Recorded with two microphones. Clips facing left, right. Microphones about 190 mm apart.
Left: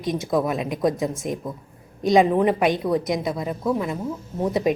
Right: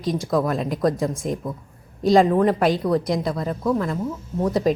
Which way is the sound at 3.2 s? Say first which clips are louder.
Right 1 dB; centre (ahead or behind).